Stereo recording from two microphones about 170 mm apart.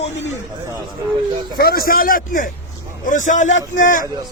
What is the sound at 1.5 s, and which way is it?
A man's voice, 65° left (ahead or behind).